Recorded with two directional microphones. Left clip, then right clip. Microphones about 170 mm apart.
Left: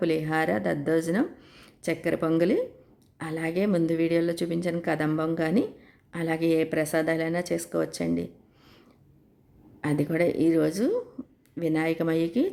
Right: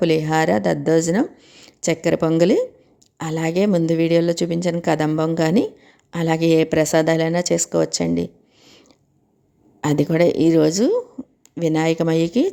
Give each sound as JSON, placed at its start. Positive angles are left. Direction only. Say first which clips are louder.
{"t": 0.0, "sound": "speech", "louder": "right 8 dB", "side_deg": -35}
{"t": 1.4, "sound": "a sound", "louder": "right 6 dB", "side_deg": -20}
{"t": 1.8, "sound": "speech", "louder": "right 8 dB", "side_deg": -35}
{"t": 9.8, "sound": "speech", "louder": "right 8 dB", "side_deg": -35}